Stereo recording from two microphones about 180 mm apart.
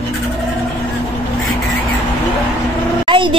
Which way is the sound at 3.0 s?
30° right (ahead or behind).